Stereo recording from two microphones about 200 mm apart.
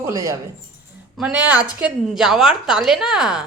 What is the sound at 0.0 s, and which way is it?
Speech, 15° right (ahead or behind).